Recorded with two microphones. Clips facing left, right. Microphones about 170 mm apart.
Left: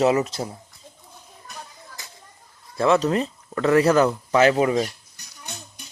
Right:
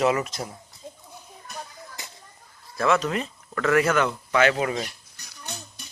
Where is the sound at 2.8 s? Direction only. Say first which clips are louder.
Left 4 dB; 35° left (ahead or behind).